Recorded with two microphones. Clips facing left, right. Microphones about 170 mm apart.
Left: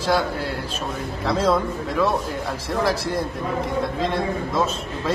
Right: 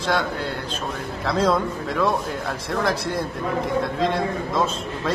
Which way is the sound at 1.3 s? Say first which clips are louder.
Even; centre (ahead or behind).